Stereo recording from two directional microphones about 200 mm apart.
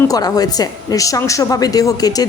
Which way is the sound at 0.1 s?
20° left (ahead or behind).